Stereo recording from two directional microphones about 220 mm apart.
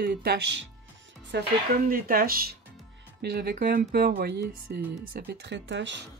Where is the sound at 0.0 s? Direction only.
45° right (ahead or behind).